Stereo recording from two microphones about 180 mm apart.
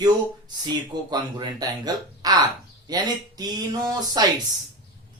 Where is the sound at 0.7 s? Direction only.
25° right (ahead or behind).